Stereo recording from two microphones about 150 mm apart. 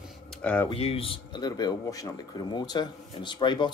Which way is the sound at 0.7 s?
40° left (ahead or behind).